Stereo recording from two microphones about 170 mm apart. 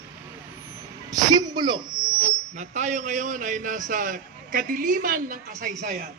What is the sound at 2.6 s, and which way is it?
A man's voice, 45° right (ahead or behind).